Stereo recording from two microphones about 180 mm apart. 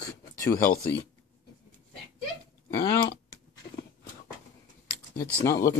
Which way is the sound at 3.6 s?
50° left (ahead or behind).